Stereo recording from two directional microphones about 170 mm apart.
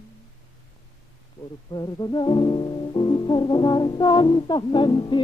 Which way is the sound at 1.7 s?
25° left (ahead or behind).